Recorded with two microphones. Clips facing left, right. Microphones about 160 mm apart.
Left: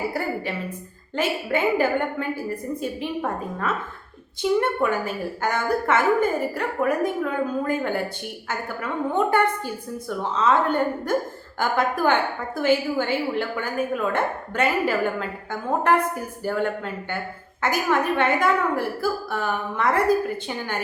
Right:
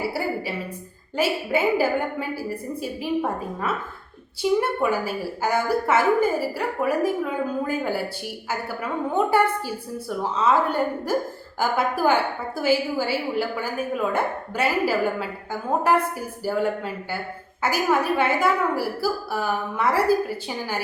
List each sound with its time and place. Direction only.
1.1 s a woman's voice: 10° right (ahead or behind)